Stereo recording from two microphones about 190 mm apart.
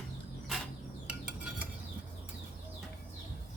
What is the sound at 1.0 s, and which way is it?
Stir, 10° right (ahead or behind).